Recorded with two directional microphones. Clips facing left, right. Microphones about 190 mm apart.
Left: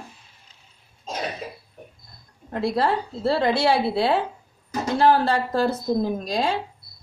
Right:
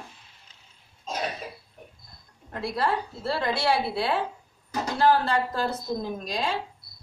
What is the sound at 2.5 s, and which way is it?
A woman's voice, 30° left (ahead or behind).